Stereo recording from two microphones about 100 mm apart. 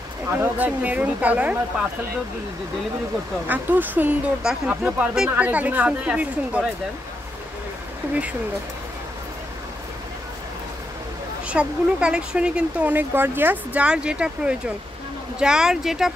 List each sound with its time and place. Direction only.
0.4 s speech: 15° right (ahead or behind)
3.4 s speech: 15° right (ahead or behind)
4.4 s speech: 5° right (ahead or behind)
4.8 s speech: 15° right (ahead or behind)
8.1 s speech: 15° right (ahead or behind)
11.4 s speech: 10° right (ahead or behind)